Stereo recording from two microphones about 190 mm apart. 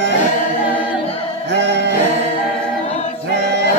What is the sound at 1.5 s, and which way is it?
Music, 65° right (ahead or behind).